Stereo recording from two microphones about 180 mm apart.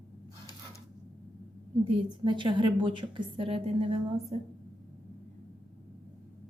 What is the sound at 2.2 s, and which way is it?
A woman's voice, 25° right (ahead or behind).